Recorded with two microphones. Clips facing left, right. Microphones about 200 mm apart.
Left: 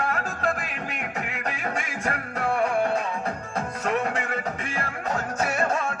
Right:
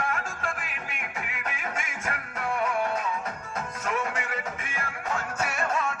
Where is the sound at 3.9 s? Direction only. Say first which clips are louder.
Left 4 dB; 40° left (ahead or behind).